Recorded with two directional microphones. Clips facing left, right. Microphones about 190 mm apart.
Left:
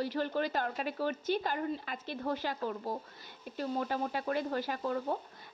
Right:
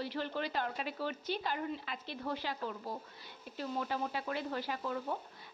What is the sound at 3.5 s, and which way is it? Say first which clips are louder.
A woman's voice: left 3 dB; 45° left (ahead or behind).